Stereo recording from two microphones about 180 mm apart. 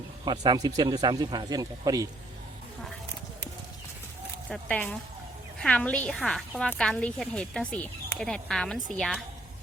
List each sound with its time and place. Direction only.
0.3 s speech: 25° right (ahead or behind)
4.4 s a woman's voice: 5° left (ahead or behind)